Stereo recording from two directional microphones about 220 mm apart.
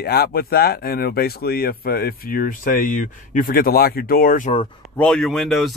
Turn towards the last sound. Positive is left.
turn(degrees=0)  # may be behind; listen again after turning